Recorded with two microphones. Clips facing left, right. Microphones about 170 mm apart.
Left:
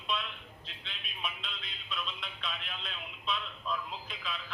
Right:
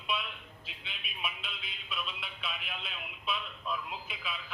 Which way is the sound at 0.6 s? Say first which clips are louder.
Right 2 dB; 5° right (ahead or behind).